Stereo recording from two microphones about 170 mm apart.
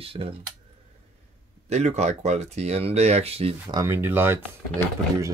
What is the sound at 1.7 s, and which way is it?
Speech, 40° right (ahead or behind).